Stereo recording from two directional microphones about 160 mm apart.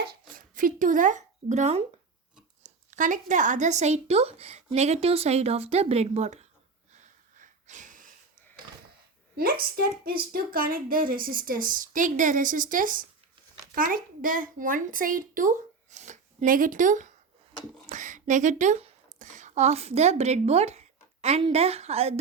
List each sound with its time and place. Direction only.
0.3 s speech: 60° right (ahead or behind); by 6.5 s 45° right (ahead or behind)
6.9 s a sound: 50° right (ahead or behind)
9.3 s a child's voice: 70° right (ahead or behind); by 22.2 s 40° right (ahead or behind)